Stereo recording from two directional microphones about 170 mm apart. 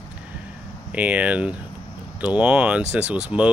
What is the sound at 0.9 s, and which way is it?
Speech, 10° right (ahead or behind).